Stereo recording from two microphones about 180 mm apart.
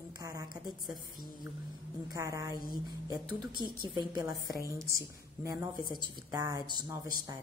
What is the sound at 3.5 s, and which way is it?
Speech, 25° left (ahead or behind).